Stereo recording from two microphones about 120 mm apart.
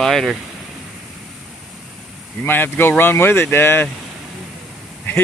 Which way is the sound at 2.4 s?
15° left (ahead or behind).